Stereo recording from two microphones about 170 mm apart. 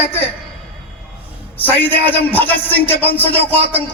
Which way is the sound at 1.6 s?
10° left (ahead or behind).